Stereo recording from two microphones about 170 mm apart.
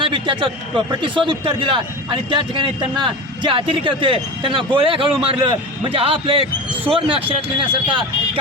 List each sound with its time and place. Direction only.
0.0 s a man's voice: 30° right (ahead or behind)